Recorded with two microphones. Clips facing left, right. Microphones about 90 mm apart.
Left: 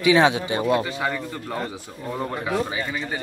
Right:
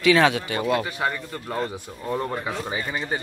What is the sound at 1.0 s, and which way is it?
Speech, 5° right (ahead or behind).